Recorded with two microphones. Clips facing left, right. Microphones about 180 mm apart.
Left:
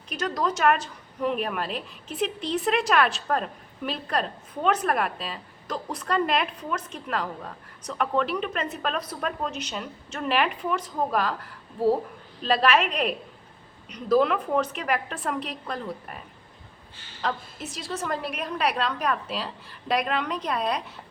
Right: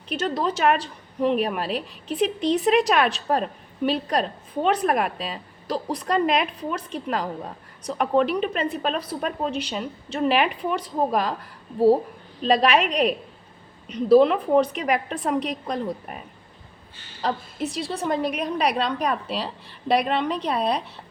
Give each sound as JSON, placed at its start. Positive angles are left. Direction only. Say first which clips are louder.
{"t": 0.1, "sound": "a woman's voice", "louder": "right 3 dB", "side_deg": -30}
{"t": 12.5, "sound": "a woman's voice", "louder": "right 2 dB", "side_deg": -35}
{"t": 17.2, "sound": "a woman's voice", "louder": "right 5 dB", "side_deg": -35}